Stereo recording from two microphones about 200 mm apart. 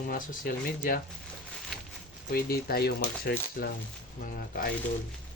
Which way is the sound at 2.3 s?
50° left (ahead or behind).